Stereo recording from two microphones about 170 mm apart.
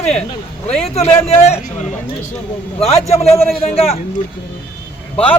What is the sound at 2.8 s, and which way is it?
Speech, 40° left (ahead or behind).